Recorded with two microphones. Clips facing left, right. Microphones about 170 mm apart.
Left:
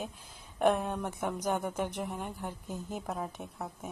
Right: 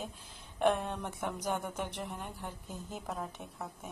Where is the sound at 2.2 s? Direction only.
50° left (ahead or behind).